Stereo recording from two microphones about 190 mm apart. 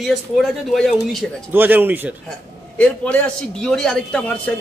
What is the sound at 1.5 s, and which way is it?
Speech, 10° right (ahead or behind).